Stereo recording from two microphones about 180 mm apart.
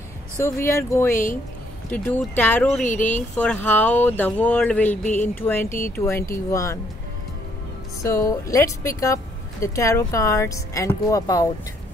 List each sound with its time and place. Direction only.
0.4 s speech: 15° left (ahead or behind)
1.1 s speech: 45° left (ahead or behind)
1.9 s speech: 10° left (ahead or behind)
8.0 s speech: 15° left (ahead or behind)